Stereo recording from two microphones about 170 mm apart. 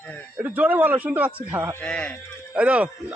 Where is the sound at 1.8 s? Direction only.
5° left (ahead or behind).